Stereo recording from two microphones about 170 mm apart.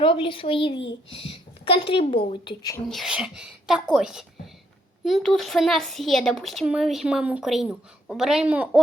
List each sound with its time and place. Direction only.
0.0 s a woman's voice: 30° left (ahead or behind)
2.9 s speech: 5° right (ahead or behind)